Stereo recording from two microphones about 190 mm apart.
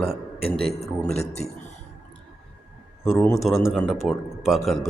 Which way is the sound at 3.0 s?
Centre (ahead or behind).